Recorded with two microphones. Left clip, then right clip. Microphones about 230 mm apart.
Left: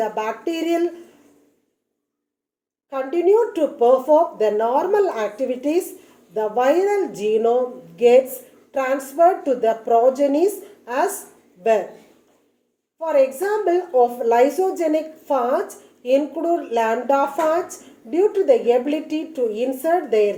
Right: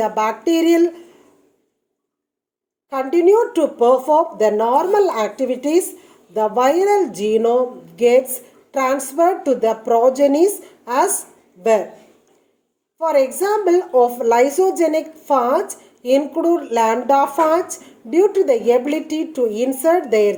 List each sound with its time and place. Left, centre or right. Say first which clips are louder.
0.0 s a woman's voice: right 5 dB; right
2.9 s a woman's voice: right 3 dB; right
13.0 s a woman's voice: right 2 dB; right